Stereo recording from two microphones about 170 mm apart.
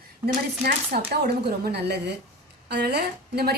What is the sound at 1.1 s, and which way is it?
Speech, 70° right (ahead or behind).